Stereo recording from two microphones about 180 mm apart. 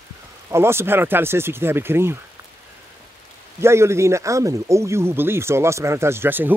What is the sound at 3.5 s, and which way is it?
Speech, 15° right (ahead or behind).